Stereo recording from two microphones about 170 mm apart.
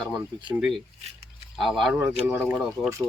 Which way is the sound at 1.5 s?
Centre (ahead or behind).